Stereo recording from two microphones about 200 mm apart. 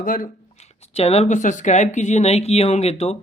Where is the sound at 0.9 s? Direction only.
30° left (ahead or behind).